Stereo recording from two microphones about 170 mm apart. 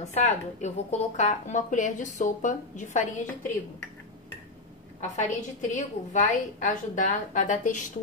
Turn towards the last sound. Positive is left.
turn(degrees=50)  # may be behind; listen again after turning